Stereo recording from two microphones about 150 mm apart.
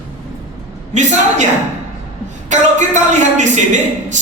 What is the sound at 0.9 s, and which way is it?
Speech, 55° right (ahead or behind).